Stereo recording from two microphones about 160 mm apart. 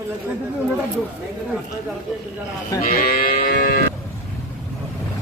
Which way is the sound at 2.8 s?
60° left (ahead or behind).